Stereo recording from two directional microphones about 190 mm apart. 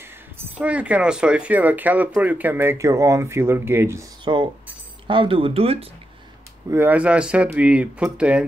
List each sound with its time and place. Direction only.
0.4 s speech: 5° right (ahead or behind)
4.2 s a sound: 25° right (ahead or behind)
5.0 s speech: 25° right (ahead or behind)
6.7 s speech: 10° right (ahead or behind)